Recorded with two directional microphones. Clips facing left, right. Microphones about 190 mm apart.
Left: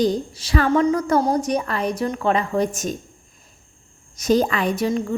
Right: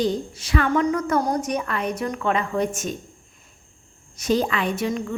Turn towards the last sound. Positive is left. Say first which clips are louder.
# left 3 dB
turn(degrees=35)  # may be behind; listen again after turning